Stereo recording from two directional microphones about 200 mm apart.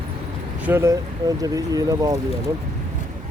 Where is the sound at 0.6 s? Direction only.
10° right (ahead or behind).